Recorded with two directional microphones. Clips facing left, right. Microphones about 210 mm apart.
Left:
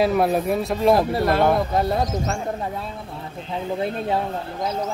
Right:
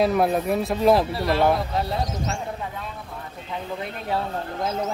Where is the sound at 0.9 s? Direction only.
50° left (ahead or behind).